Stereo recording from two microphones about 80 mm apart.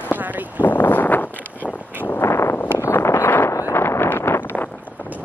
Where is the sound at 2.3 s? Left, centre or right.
Left.